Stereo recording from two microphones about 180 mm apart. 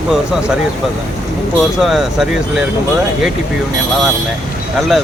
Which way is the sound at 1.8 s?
Centre (ahead or behind).